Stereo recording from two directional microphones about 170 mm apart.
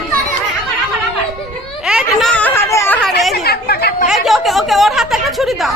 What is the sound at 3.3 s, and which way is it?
Chatter, 70° left (ahead or behind).